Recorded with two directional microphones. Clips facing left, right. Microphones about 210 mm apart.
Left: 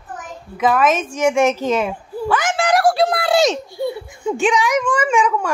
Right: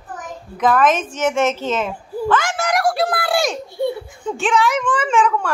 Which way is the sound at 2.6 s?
30° left (ahead or behind).